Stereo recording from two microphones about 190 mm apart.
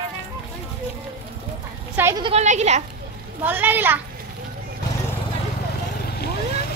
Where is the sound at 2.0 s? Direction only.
15° right (ahead or behind).